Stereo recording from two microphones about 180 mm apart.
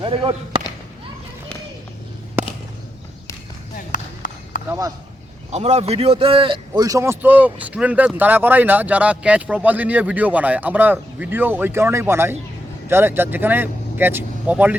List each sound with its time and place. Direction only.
0.0 s speech: 30° right (ahead or behind)
3.9 s run: 45° left (ahead or behind)
5.5 s a man's voice: 40° right (ahead or behind); by 14.8 s 10° right (ahead or behind)